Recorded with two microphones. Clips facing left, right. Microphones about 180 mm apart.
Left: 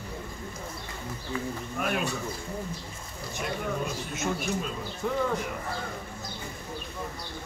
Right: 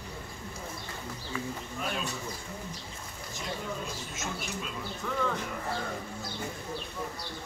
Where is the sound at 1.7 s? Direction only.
60° left (ahead or behind).